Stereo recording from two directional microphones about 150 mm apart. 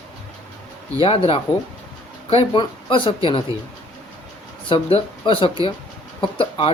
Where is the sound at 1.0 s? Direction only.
40° left (ahead or behind).